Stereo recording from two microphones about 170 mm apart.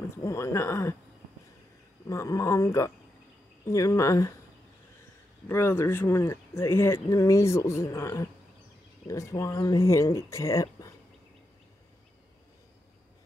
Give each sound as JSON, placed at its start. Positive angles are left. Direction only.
{"t": 0.2, "sound": "speech", "side_deg": 15}
{"t": 2.0, "sound": "speech", "side_deg": 20}
{"t": 5.5, "sound": "speech", "side_deg": 15}